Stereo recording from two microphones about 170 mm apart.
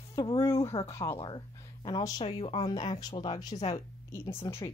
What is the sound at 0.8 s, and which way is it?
Speech, 15° left (ahead or behind).